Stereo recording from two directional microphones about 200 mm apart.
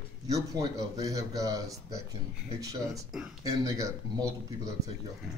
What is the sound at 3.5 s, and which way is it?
Speech, 15° right (ahead or behind).